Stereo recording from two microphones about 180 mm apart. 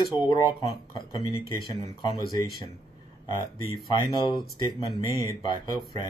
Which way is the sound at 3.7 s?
25° left (ahead or behind).